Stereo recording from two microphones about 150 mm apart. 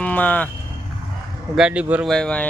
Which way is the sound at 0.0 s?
10° left (ahead or behind).